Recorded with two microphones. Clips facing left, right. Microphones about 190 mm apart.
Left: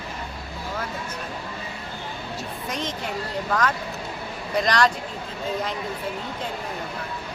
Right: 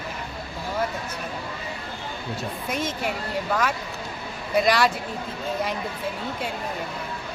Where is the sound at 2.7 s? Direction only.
5° right (ahead or behind).